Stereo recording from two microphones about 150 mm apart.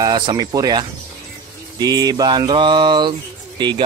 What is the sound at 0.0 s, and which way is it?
Mantra, 30° right (ahead or behind).